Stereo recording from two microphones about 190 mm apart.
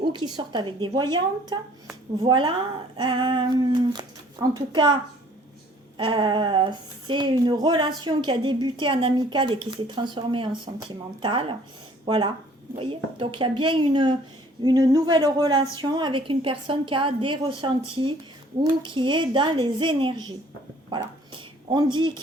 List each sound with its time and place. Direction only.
0.1 s speech: 25° right (ahead or behind)
6.0 s speech: 25° right (ahead or behind)